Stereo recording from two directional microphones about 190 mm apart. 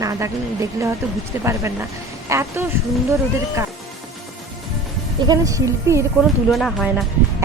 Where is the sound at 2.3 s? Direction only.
15° right (ahead or behind).